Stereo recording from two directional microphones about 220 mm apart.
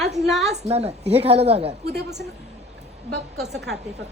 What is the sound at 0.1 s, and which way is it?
Speech, centre (ahead or behind).